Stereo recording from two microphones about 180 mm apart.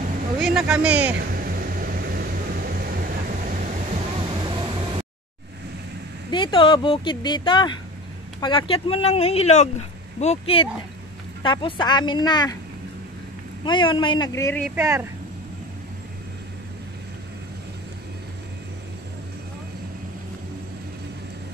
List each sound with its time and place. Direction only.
0.6 s speech: 5° right (ahead or behind)
1.1 s vehicle: 55° right (ahead or behind)
4.4 s vehicle: 25° right (ahead or behind)
6.3 s speech: 25° left (ahead or behind)
13.7 s speech: 25° left (ahead or behind)
14.8 s speech: 15° right (ahead or behind)